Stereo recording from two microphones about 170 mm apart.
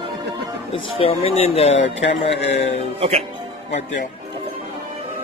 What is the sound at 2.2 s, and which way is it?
Speech, 90° left.